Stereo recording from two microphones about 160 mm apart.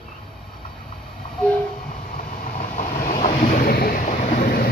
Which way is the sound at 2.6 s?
50° left (ahead or behind).